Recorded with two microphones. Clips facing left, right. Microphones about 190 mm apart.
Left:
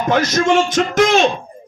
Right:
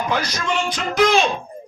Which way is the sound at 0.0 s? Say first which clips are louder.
Left 8 dB; 45° left (ahead or behind).